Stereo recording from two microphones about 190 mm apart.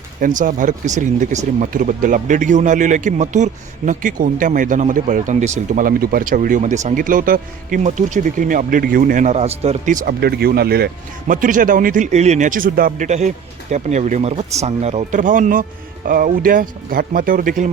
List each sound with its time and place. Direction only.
0.2 s speech: 45° right (ahead or behind)